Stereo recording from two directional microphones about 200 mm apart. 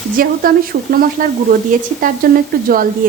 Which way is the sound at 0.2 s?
45° right (ahead or behind).